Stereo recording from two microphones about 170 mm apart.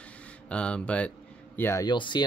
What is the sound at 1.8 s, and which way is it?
Speech, 25° left (ahead or behind).